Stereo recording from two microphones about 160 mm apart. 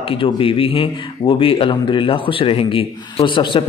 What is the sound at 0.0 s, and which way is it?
A man's voice, 35° left (ahead or behind).